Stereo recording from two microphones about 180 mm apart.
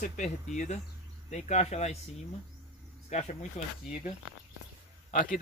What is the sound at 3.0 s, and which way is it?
Speech, 40° left (ahead or behind).